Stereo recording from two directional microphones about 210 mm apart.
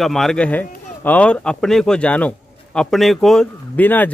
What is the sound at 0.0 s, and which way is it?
A man's voice, centre (ahead or behind).